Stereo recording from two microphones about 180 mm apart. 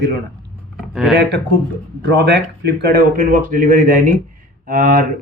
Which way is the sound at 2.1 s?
65° right (ahead or behind).